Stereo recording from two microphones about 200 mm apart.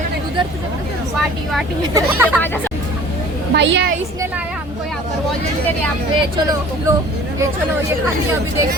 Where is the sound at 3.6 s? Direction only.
60° right (ahead or behind).